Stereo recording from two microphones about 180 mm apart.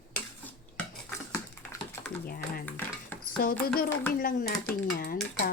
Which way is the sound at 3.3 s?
55° left (ahead or behind).